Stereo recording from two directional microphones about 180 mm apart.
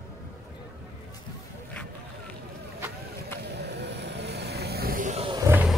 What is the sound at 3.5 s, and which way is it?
Vehicle, 70° right (ahead or behind).